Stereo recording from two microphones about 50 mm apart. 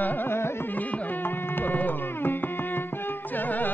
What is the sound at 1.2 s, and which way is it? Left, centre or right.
Music, left.